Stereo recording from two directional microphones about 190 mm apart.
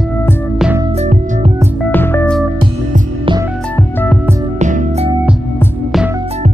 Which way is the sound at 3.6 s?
10° left (ahead or behind).